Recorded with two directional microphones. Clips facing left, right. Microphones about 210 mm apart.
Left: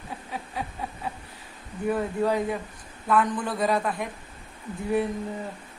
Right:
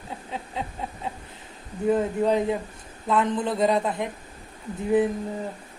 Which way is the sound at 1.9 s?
20° right (ahead or behind).